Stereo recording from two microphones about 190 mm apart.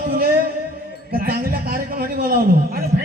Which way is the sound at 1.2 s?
50° right (ahead or behind).